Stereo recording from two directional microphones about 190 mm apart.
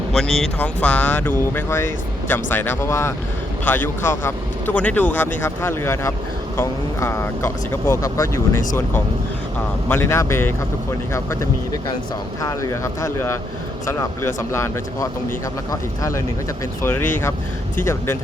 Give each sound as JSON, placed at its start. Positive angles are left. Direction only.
{"t": 0.1, "sound": "speech", "side_deg": 0}
{"t": 4.3, "sound": "speech", "side_deg": 10}
{"t": 9.9, "sound": "speech", "side_deg": 15}
{"t": 15.7, "sound": "speech", "side_deg": 15}